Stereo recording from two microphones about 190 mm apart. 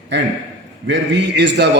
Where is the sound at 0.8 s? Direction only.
65° right (ahead or behind).